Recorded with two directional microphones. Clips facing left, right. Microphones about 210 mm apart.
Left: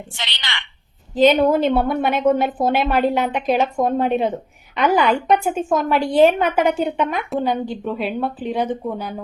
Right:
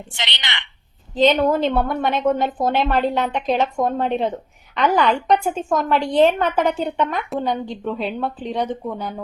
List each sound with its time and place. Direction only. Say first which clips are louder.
0.2 s a woman's voice: right 2 dB; 20° right (ahead or behind)
1.1 s a woman's voice: left 2 dB; 10° left (ahead or behind)